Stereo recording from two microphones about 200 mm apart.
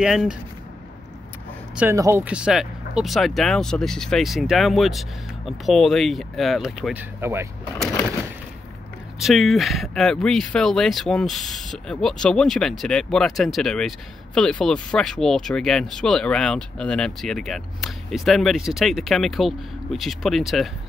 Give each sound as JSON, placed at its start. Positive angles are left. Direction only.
{"t": 0.0, "sound": "speech", "side_deg": 0}
{"t": 1.8, "sound": "speech", "side_deg": -15}
{"t": 9.2, "sound": "speech", "side_deg": 0}